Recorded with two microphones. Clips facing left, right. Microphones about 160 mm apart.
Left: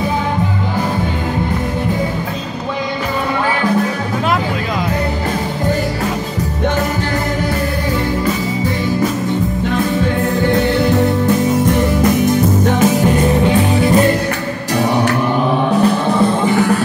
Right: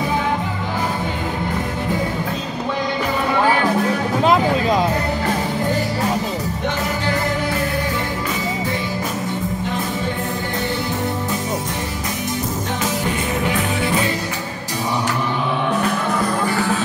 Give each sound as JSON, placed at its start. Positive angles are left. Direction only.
{"t": 10.5, "sound": "music", "side_deg": 65}
{"t": 13.5, "sound": "music", "side_deg": 35}
{"t": 15.7, "sound": "music", "side_deg": 30}